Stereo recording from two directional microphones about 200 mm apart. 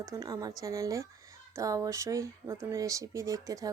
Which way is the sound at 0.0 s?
15° right (ahead or behind).